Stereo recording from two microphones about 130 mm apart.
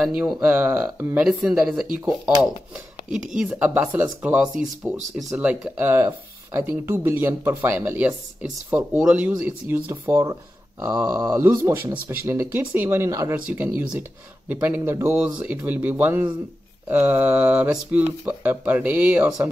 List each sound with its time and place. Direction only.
0.0 s speech: 5° right (ahead or behind)
3.3 s speech: 10° right (ahead or behind)